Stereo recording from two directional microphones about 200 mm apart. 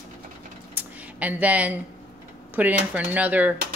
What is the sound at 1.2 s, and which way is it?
A woman's voice, 10° right (ahead or behind).